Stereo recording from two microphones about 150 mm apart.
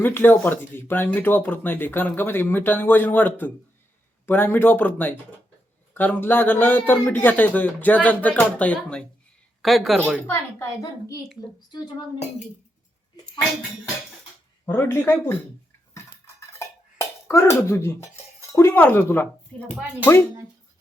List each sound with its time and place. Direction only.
0.0 s speech: 15° left (ahead or behind)
10.2 s a woman's voice: 20° left (ahead or behind)
14.7 s speech: 15° left (ahead or behind)
17.2 s speech: 20° left (ahead or behind)
19.7 s speech: 5° right (ahead or behind)